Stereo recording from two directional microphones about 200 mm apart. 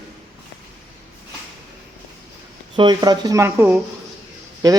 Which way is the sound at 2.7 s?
20° right (ahead or behind).